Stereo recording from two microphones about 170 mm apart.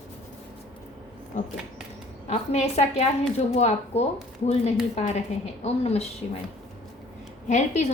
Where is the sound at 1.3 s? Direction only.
40° left (ahead or behind).